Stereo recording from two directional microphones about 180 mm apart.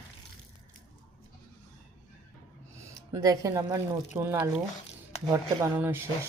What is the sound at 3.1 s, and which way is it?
A woman's voice, 15° right (ahead or behind).